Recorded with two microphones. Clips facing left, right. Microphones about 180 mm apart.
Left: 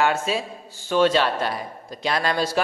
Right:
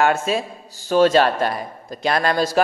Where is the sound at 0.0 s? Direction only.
50° right (ahead or behind).